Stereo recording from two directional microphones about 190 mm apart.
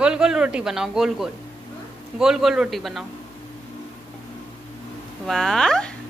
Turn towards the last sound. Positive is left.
turn(degrees=5)  # may be behind; listen again after turning